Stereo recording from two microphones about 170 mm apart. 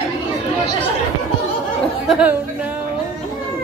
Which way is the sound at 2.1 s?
5° right (ahead or behind).